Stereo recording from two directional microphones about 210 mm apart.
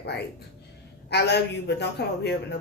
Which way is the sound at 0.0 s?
50° left (ahead or behind).